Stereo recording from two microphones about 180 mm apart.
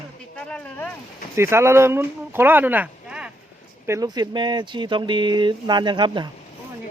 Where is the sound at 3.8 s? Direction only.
20° right (ahead or behind).